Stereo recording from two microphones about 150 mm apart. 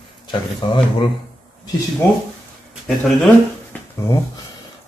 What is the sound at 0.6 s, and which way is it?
Speech, 35° left (ahead or behind).